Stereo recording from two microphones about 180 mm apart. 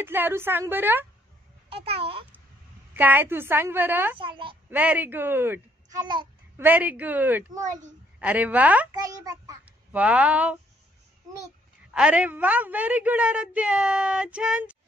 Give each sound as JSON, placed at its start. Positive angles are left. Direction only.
{"t": 0.0, "sound": "a woman's voice", "side_deg": -10}
{"t": 1.7, "sound": "a child's voice", "side_deg": -35}
{"t": 2.9, "sound": "a woman's voice", "side_deg": -10}
{"t": 4.2, "sound": "a child's voice", "side_deg": -30}
{"t": 4.6, "sound": "a woman's voice", "side_deg": -10}
{"t": 6.5, "sound": "a woman's voice", "side_deg": -10}
{"t": 8.9, "sound": "a child's voice", "side_deg": -20}
{"t": 9.7, "sound": "speech", "side_deg": -5}
{"t": 11.9, "sound": "a woman's voice", "side_deg": -5}